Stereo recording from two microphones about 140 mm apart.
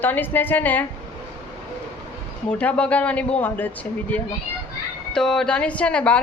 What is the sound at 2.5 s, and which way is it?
A woman's voice, 10° left (ahead or behind).